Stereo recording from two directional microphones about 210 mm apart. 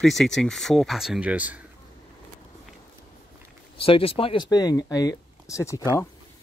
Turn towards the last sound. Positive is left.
turn(degrees=15)  # may be behind; listen again after turning